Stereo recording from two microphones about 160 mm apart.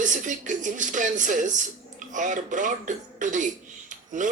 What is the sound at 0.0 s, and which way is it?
Speech, 50° right (ahead or behind).